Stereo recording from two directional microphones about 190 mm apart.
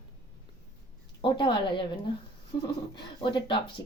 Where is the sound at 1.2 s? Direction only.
25° left (ahead or behind).